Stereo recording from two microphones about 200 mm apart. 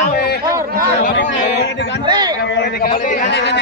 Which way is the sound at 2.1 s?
20° right (ahead or behind).